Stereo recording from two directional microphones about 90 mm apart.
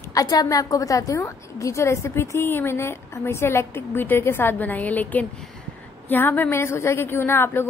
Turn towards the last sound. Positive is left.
turn(degrees=25)  # may be behind; listen again after turning